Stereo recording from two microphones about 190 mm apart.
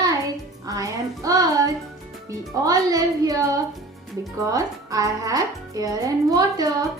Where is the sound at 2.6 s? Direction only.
20° right (ahead or behind).